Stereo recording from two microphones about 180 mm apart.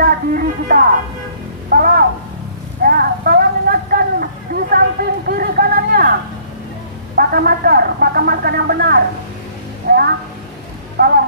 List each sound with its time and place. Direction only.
0.0 s speech: 55° right (ahead or behind)
2.8 s vehicle: 55° right (ahead or behind)
7.2 s speech: 55° right (ahead or behind)